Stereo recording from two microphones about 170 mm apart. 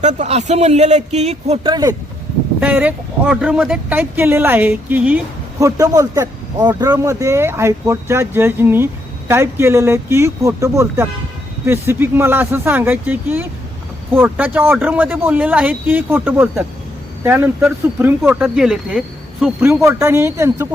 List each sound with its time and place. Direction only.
0.0 s a man's voice: 45° right (ahead or behind)
1.7 s speech: 20° right (ahead or behind)
2.6 s a man's voice: 10° right (ahead or behind)
5.5 s a man's voice: 20° right (ahead or behind)
19.6 s a man's voice: 15° right (ahead or behind)